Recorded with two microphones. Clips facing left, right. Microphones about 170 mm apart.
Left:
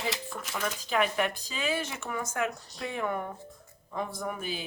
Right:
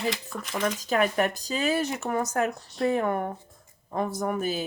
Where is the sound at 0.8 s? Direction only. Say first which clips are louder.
Right 3 dB; 45° right (ahead or behind).